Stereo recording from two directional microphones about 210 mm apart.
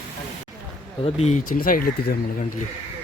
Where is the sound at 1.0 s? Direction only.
30° left (ahead or behind).